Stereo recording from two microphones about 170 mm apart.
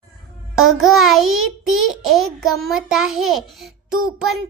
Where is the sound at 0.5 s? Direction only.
Centre (ahead or behind).